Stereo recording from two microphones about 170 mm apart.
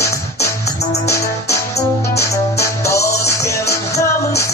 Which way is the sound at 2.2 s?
15° left (ahead or behind).